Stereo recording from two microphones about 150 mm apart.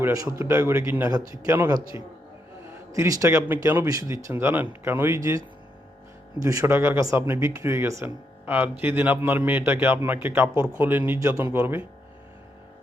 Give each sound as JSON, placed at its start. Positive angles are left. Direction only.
{"t": 0.0, "sound": "speech", "side_deg": -20}
{"t": 6.4, "sound": "speech", "side_deg": -20}